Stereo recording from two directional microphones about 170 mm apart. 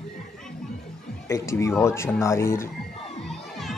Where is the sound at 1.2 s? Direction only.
15° left (ahead or behind).